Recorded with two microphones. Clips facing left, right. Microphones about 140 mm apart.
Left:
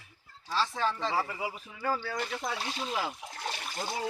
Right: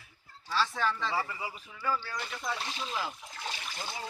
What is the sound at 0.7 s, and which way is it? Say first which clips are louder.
Speech: left 1 dB; 25° left (ahead or behind).